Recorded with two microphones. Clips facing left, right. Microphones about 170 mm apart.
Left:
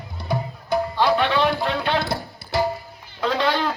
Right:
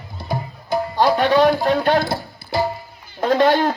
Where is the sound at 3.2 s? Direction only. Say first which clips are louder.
Right 6 dB; 50° right (ahead or behind).